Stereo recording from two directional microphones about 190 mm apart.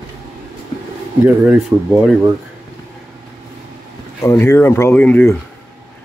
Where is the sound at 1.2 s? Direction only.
10° right (ahead or behind).